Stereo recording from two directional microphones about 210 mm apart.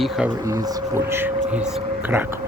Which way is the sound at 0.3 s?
15° right (ahead or behind).